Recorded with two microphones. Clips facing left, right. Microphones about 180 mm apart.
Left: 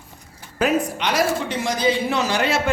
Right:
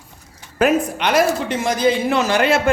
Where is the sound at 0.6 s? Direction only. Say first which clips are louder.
Right 4 dB; 55° right (ahead or behind).